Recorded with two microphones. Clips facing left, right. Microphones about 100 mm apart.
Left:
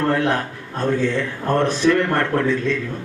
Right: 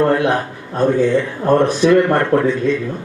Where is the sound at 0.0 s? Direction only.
15° right (ahead or behind).